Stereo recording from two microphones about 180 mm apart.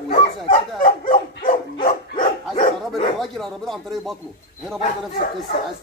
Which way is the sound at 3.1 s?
Centre (ahead or behind).